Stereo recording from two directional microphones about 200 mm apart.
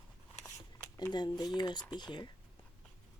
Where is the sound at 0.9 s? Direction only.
20° left (ahead or behind).